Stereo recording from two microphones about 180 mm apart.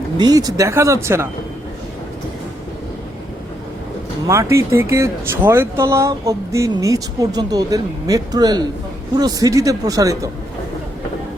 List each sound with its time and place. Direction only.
0.2 s speech: 20° right (ahead or behind)
4.3 s a man's voice: 15° right (ahead or behind)